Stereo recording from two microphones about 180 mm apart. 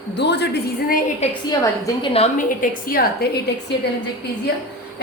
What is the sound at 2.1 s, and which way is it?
A woman's voice, 50° left (ahead or behind).